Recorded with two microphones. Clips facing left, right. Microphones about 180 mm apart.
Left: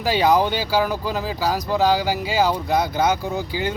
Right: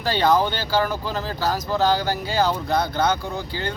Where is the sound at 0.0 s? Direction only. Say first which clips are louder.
Left 2 dB; 10° left (ahead or behind).